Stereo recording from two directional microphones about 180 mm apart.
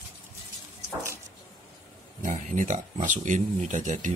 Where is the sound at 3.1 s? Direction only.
45° right (ahead or behind).